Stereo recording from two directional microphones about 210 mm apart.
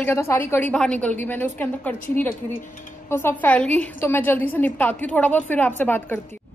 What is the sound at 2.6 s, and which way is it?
Speech, 40° left (ahead or behind).